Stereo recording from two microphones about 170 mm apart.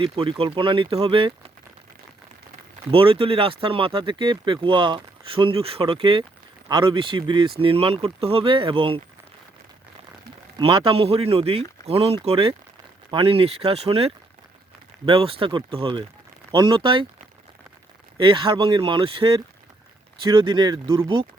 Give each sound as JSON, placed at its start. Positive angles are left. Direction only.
{"t": 0.0, "sound": "speech", "side_deg": -30}
{"t": 2.9, "sound": "speech", "side_deg": -30}
{"t": 10.6, "sound": "speech", "side_deg": -30}
{"t": 18.2, "sound": "speech", "side_deg": -30}